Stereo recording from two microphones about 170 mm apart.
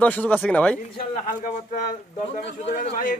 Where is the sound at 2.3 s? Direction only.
50° left (ahead or behind).